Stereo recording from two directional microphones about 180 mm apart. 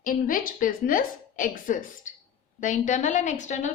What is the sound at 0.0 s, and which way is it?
A woman's voice, 50° left (ahead or behind).